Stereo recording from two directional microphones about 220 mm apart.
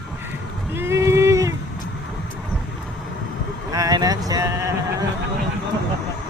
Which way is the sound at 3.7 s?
15° right (ahead or behind).